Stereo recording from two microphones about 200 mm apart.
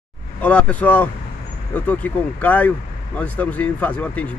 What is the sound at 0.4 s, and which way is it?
Speech, 5° left (ahead or behind).